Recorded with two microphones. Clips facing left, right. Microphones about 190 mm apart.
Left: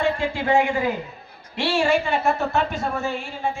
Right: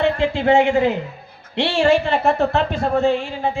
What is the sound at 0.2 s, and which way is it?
Speech, 75° right (ahead or behind).